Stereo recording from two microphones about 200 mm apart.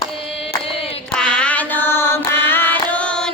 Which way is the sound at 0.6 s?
30° left (ahead or behind).